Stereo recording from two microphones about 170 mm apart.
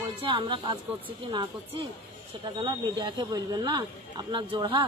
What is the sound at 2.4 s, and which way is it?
Speech, 25° right (ahead or behind).